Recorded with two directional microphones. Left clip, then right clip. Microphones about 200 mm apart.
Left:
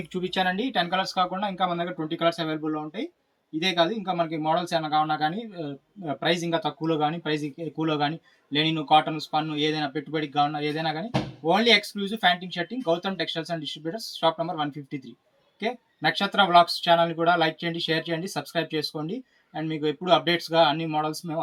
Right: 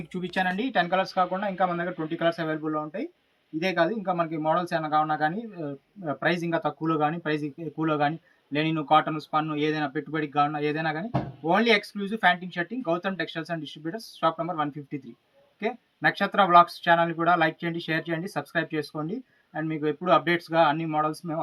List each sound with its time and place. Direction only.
0.1 s speech: centre (ahead or behind)